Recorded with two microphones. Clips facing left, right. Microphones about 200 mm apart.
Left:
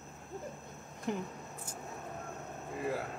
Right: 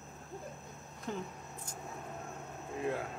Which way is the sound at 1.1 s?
15° left (ahead or behind).